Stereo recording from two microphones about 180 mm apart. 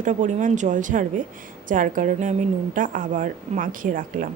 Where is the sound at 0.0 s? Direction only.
45° right (ahead or behind).